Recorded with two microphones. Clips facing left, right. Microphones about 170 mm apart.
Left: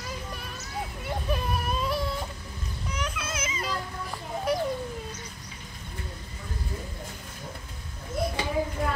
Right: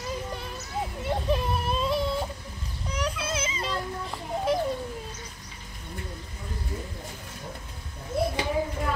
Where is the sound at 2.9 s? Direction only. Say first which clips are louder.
Right 4 dB; 30° right (ahead or behind).